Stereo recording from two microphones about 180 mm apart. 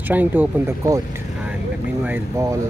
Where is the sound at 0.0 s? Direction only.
10° right (ahead or behind).